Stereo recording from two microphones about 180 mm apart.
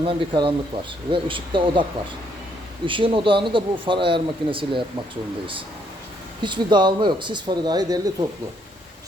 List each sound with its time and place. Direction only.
0.0 s speech: 30° right (ahead or behind)
2.8 s speech: 30° right (ahead or behind)
6.4 s speech: 25° right (ahead or behind)